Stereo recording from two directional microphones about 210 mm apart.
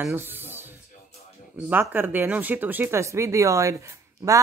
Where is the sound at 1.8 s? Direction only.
10° right (ahead or behind).